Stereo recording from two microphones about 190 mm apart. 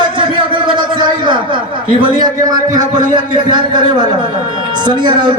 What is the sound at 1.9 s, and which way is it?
A man's voice, 25° right (ahead or behind).